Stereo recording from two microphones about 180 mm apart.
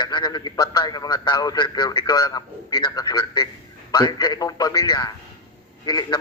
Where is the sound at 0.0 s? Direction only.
25° left (ahead or behind).